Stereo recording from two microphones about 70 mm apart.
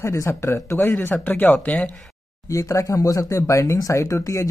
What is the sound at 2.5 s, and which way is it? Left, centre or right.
Speech, left.